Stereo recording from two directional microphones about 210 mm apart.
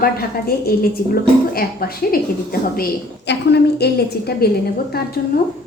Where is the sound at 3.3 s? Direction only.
55° left (ahead or behind).